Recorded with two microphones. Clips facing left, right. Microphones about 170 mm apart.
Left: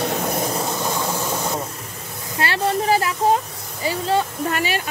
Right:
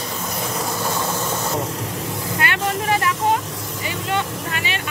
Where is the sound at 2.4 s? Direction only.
30° left (ahead or behind).